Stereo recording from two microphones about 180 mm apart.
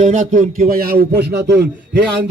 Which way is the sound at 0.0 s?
45° right (ahead or behind).